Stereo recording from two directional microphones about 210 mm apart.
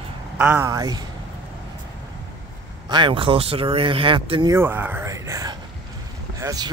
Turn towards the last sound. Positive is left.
turn(degrees=-15)  # may be behind; listen again after turning